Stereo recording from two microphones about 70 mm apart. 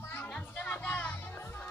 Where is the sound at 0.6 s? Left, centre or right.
Left.